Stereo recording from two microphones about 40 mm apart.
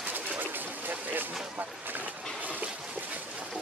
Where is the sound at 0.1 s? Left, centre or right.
Right.